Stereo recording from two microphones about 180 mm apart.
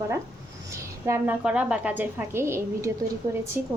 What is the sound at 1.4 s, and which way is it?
A woman's voice, 5° right (ahead or behind).